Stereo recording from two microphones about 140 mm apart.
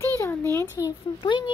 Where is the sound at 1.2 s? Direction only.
35° left (ahead or behind).